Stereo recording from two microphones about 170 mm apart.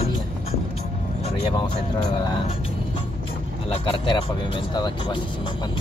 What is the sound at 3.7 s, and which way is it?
Speech, 30° left (ahead or behind).